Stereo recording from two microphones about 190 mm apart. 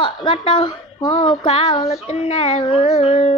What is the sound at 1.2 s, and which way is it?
Speech, 30° left (ahead or behind).